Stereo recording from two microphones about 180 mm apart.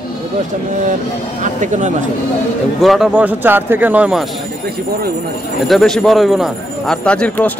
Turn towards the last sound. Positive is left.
turn(degrees=5)  # may be behind; listen again after turning